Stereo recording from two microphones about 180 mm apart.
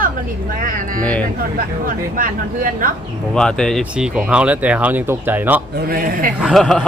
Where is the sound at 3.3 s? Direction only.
5° left (ahead or behind).